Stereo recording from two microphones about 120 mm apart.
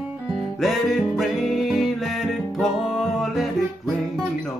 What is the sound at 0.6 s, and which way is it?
Music, centre (ahead or behind).